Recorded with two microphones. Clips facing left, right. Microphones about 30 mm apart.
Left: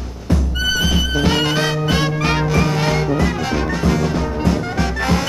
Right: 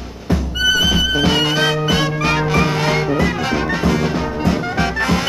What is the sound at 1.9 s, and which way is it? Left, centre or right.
Music, centre.